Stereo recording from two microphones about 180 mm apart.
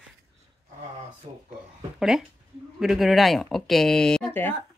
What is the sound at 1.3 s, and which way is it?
Speech, 35° right (ahead or behind).